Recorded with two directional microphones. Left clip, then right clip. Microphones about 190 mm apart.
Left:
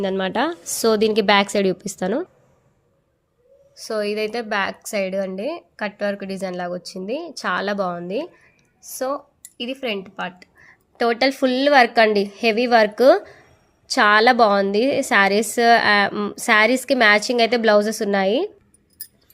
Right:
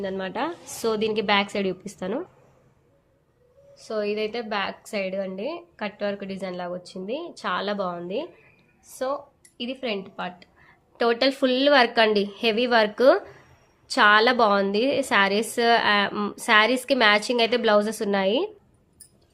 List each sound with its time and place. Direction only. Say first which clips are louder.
0.0 s a woman's voice: left 7 dB; 45° left (ahead or behind)
3.8 s a woman's voice: left 4 dB; 45° left (ahead or behind); by 18.5 s 20° left (ahead or behind)